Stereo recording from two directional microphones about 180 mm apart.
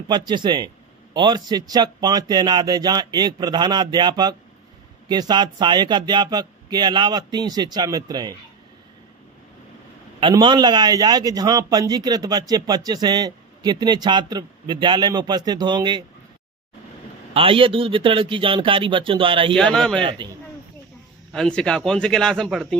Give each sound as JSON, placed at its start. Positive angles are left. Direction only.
{"t": 0.3, "sound": "a man's voice", "side_deg": -25}
{"t": 10.2, "sound": "a man's voice", "side_deg": -25}
{"t": 17.3, "sound": "a man's voice", "side_deg": -30}
{"t": 19.5, "sound": "a man's voice", "side_deg": 5}
{"t": 20.0, "sound": "a man's voice", "side_deg": -25}
{"t": 21.3, "sound": "a man's voice", "side_deg": 5}